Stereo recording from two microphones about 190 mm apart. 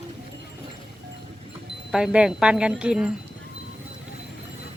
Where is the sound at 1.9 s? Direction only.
5° right (ahead or behind).